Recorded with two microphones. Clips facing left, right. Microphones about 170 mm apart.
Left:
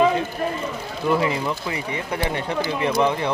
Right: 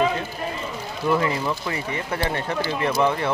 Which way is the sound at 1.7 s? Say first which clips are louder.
Even; 15° left (ahead or behind).